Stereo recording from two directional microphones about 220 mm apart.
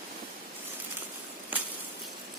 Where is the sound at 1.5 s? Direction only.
10° right (ahead or behind).